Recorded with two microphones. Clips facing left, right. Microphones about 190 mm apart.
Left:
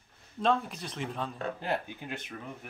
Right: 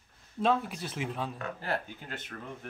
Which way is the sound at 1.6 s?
15° left (ahead or behind).